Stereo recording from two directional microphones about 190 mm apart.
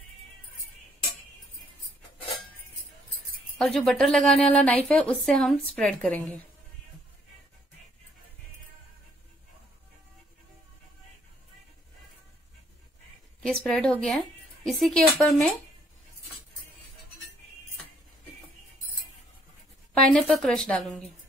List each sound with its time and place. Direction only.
3.5 s speech: centre (ahead or behind)
13.5 s speech: 5° left (ahead or behind)
19.9 s speech: 5° left (ahead or behind)